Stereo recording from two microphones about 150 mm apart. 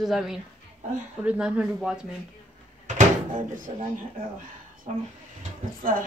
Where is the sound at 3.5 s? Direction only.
60° right (ahead or behind).